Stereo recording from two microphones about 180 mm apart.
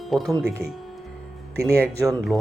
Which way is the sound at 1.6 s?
Centre (ahead or behind).